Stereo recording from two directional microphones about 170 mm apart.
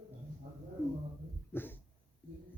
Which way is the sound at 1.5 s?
10° left (ahead or behind).